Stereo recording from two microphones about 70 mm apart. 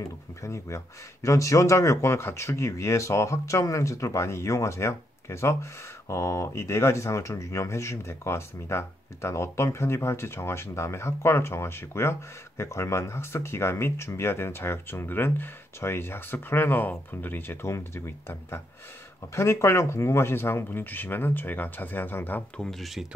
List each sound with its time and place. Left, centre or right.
0.4 s speech: left
22.6 s speech: centre